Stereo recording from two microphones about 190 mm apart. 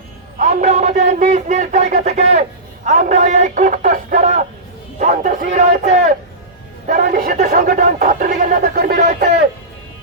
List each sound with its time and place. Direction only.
0.3 s a sound: 40° right (ahead or behind)
2.8 s speech: 40° right (ahead or behind)
7.5 s speech: 50° right (ahead or behind)